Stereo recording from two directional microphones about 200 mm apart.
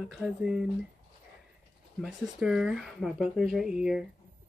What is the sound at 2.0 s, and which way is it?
Speech, centre (ahead or behind).